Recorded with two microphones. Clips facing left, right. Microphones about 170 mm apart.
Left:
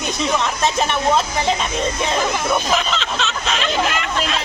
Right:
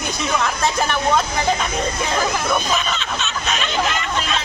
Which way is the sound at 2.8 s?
90° left.